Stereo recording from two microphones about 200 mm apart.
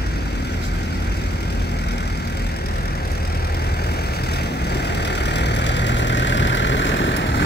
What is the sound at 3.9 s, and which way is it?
Vehicle, 55° left (ahead or behind).